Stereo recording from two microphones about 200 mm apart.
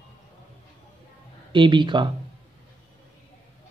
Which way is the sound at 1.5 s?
25° right (ahead or behind).